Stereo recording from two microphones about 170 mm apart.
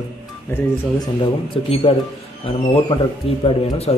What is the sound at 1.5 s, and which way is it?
Speech, 30° left (ahead or behind).